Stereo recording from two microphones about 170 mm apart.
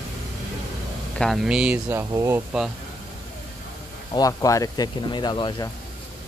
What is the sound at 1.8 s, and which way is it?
Speech, 20° right (ahead or behind).